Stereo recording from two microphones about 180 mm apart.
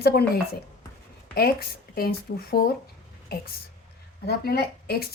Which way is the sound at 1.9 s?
60° left (ahead or behind).